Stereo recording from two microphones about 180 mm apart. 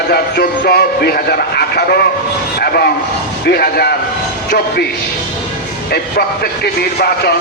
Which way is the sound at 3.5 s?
60° left (ahead or behind).